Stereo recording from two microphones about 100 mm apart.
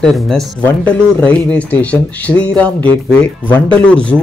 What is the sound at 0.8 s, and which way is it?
Speech, 15° left (ahead or behind).